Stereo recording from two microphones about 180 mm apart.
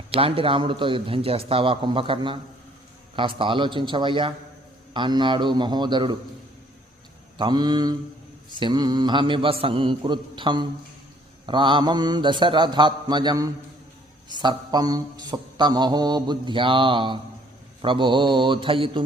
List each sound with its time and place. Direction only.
0.1 s mantra: 30° right (ahead or behind)
7.3 s mantra: 25° right (ahead or behind)